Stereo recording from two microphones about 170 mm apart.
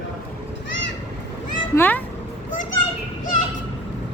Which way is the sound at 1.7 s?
10° left (ahead or behind).